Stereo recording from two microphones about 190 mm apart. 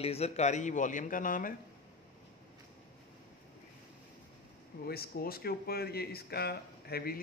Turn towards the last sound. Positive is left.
turn(degrees=55)  # may be behind; listen again after turning